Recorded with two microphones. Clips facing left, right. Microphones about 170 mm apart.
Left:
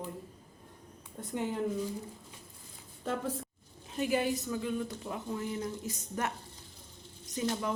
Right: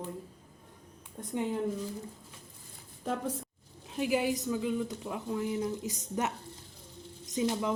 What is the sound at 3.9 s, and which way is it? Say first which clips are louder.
Speech: right 1 dB; 10° right (ahead or behind).